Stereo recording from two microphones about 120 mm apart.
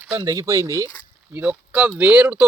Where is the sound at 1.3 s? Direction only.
10° right (ahead or behind).